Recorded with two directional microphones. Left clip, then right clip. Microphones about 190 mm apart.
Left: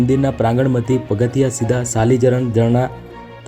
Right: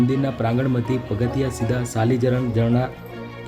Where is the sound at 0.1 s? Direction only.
15° left (ahead or behind).